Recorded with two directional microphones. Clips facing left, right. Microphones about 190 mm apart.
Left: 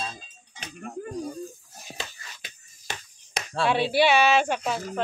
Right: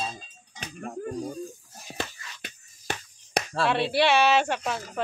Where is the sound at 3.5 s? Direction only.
Centre (ahead or behind).